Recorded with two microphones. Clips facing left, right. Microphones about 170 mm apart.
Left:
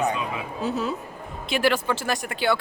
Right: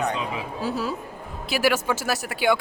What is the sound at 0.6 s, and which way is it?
Speech, 5° right (ahead or behind).